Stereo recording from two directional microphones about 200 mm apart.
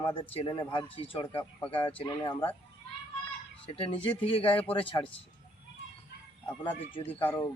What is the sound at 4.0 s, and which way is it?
Speech, 25° left (ahead or behind).